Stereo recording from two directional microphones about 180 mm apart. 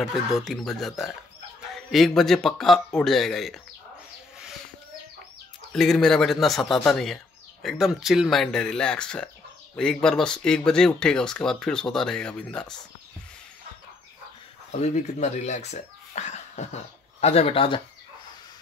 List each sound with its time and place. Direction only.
0.0 s speech: centre (ahead or behind)
5.7 s speech: centre (ahead or behind)
14.7 s speech: 40° left (ahead or behind)